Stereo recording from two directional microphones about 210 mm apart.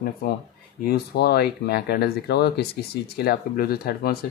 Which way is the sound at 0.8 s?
50° left (ahead or behind).